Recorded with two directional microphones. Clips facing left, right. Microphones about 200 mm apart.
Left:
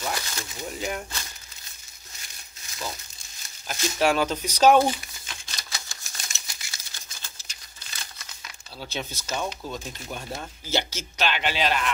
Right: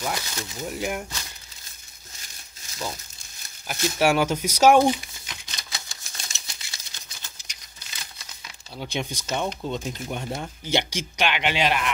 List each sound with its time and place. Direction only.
0.0 s speech: 10° right (ahead or behind)
4.0 s typewriter: 10° right (ahead or behind)
8.7 s speech: 15° right (ahead or behind)